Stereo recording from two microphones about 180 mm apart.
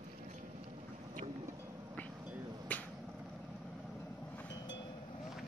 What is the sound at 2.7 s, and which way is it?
Finger snapping, 10° left (ahead or behind).